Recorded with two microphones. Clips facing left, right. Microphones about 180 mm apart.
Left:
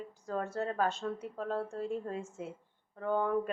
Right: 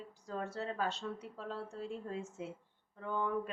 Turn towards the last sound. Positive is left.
turn(degrees=50)  # may be behind; listen again after turning